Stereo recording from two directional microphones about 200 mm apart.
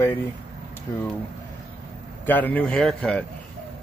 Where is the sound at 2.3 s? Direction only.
10° left (ahead or behind).